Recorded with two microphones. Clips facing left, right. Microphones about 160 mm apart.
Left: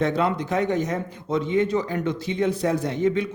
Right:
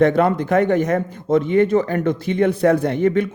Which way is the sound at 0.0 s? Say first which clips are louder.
Right 7 dB; 55° right (ahead or behind).